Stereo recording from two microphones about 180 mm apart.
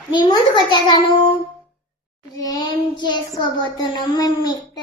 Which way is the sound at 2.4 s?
20° left (ahead or behind).